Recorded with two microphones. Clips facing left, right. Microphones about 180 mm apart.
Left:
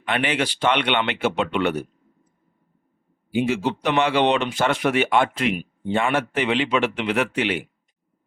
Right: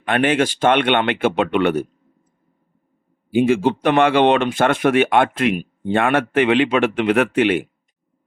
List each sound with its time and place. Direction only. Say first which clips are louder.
0.0 s speech: right 6 dB; 50° right (ahead or behind)
3.3 s speech: right 6 dB; 50° right (ahead or behind)